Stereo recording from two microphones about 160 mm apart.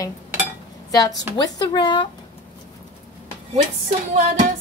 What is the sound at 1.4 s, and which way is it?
Speech, 25° left (ahead or behind).